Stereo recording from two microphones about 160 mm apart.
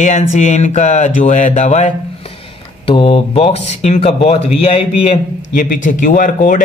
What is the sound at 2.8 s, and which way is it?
Speech, 30° left (ahead or behind).